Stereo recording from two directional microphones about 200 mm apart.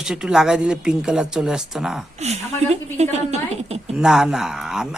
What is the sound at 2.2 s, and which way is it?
A woman's voice, 35° right (ahead or behind).